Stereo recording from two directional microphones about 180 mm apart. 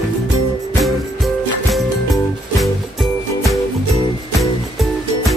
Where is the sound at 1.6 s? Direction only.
Centre (ahead or behind).